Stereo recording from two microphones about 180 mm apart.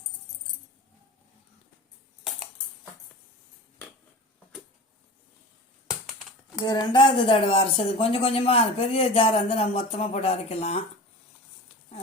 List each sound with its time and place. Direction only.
6.6 s speech: 25° left (ahead or behind)